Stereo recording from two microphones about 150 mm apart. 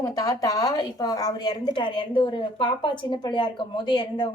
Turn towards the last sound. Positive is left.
turn(degrees=30)  # may be behind; listen again after turning